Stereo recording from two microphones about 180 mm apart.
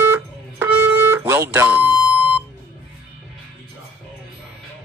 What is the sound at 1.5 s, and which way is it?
Speech, 10° right (ahead or behind).